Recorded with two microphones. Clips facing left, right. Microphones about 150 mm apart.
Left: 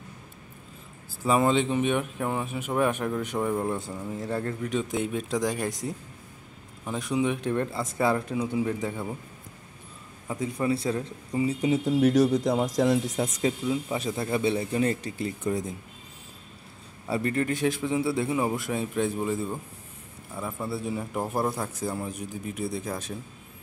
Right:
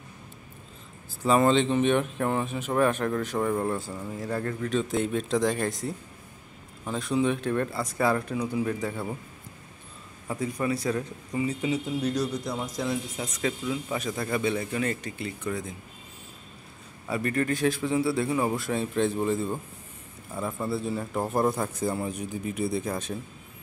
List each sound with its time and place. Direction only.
1.2 s speech: 10° left (ahead or behind)
4.2 s speech: 20° left (ahead or behind)
10.4 s speech: 25° left (ahead or behind)
12.0 s speech: 90° left
13.0 s speech: 40° left (ahead or behind)
13.4 s speech: 25° left (ahead or behind)
17.1 s a man's voice: 25° left (ahead or behind); by 23.1 s centre (ahead or behind)